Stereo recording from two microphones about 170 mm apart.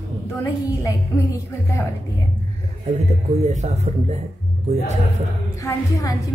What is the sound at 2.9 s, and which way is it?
Speech, 45° right (ahead or behind).